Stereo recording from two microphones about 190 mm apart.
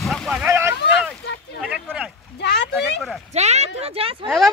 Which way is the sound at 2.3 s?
60° left (ahead or behind).